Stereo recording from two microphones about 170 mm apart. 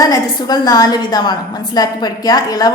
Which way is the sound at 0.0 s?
20° left (ahead or behind).